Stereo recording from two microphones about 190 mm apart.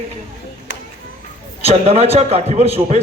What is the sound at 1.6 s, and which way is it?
A man's voice, 35° right (ahead or behind).